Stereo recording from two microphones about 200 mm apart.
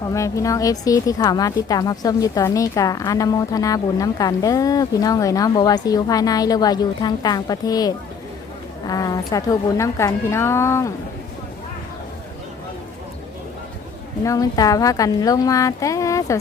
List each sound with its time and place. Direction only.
0.1 s speech: 15° left (ahead or behind)
14.3 s speech: 15° left (ahead or behind)